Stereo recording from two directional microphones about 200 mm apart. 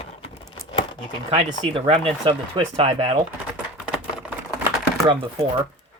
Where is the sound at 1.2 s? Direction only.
25° right (ahead or behind).